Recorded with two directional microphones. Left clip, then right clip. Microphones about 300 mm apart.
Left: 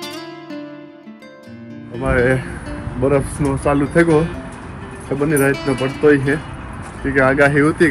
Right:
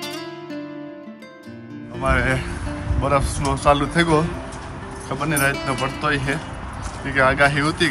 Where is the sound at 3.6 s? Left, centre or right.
Centre.